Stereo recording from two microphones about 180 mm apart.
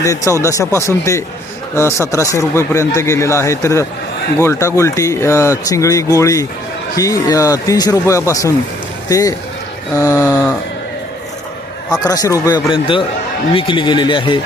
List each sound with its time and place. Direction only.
0.0 s a man's voice: 20° left (ahead or behind)
11.9 s speech: 20° left (ahead or behind)